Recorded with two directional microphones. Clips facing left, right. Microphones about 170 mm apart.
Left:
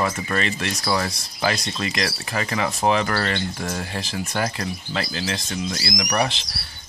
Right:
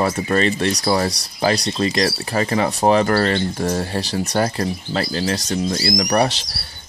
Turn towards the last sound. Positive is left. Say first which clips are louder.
# right 5 dB
turn(degrees=-40)  # may be behind; listen again after turning